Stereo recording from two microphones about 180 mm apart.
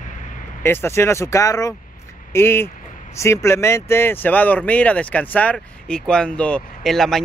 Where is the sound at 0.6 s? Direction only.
10° left (ahead or behind).